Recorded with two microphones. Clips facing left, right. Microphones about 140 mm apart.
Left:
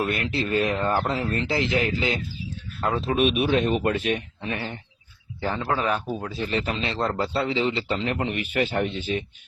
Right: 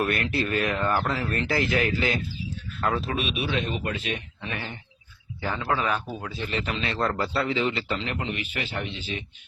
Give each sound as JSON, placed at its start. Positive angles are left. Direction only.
{"t": 0.0, "sound": "speech", "side_deg": 15}
{"t": 3.2, "sound": "speech", "side_deg": 50}
{"t": 4.4, "sound": "a man's voice", "side_deg": 30}